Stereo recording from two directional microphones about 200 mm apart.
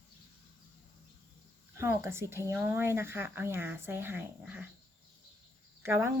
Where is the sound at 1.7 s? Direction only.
15° right (ahead or behind).